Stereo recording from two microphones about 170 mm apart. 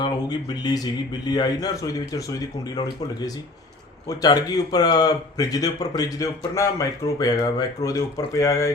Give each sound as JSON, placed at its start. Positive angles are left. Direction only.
{"t": 0.0, "sound": "speech", "side_deg": 25}